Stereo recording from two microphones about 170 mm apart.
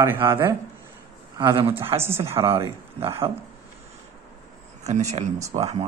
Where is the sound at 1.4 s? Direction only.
30° right (ahead or behind).